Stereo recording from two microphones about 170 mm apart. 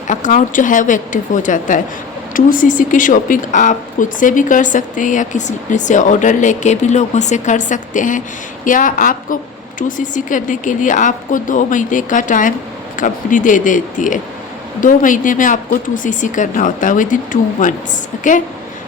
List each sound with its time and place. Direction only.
0.1 s speech: 50° left (ahead or behind)